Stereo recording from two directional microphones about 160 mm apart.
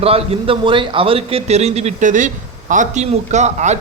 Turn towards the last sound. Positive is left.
turn(degrees=-45)  # may be behind; listen again after turning